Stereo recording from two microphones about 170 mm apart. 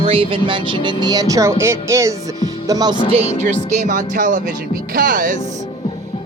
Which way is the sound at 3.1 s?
40° right (ahead or behind).